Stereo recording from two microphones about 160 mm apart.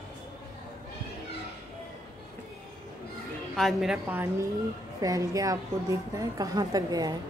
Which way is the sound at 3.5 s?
Centre (ahead or behind).